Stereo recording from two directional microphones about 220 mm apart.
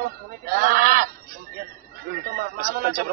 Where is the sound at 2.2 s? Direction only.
40° right (ahead or behind).